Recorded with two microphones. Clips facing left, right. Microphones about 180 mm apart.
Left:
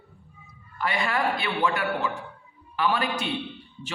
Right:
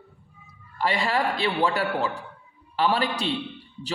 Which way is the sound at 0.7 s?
30° right (ahead or behind).